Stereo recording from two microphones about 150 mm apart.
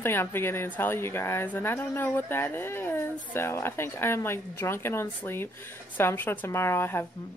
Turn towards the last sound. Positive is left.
turn(degrees=15)  # may be behind; listen again after turning